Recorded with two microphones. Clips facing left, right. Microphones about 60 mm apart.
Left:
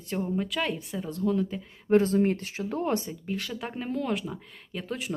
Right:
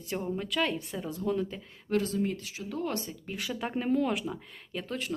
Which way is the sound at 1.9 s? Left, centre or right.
Left.